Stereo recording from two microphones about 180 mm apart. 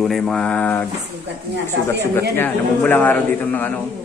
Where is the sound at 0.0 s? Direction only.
Centre (ahead or behind).